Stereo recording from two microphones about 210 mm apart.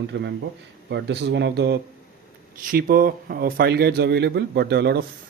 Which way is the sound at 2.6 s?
40° right (ahead or behind).